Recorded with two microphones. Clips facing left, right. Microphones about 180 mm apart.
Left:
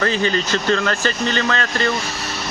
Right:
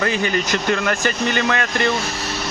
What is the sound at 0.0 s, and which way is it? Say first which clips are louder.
Speech: left 1 dB; 15° right (ahead or behind).